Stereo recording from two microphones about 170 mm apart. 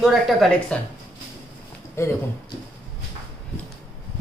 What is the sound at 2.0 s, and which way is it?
Speech, 15° left (ahead or behind).